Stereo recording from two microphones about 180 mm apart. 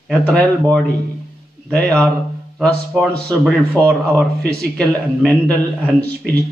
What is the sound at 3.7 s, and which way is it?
Speech, 15° right (ahead or behind).